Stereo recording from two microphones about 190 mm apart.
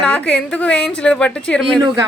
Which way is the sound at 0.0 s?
5° left (ahead or behind).